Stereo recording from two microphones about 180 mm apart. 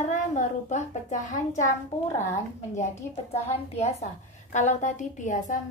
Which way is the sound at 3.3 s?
35° left (ahead or behind).